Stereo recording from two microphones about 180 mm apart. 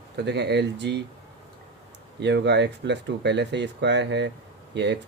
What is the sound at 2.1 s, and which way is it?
Speech, 70° right (ahead or behind).